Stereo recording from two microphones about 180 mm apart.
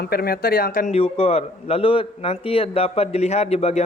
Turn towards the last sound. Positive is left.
turn(degrees=35)  # may be behind; listen again after turning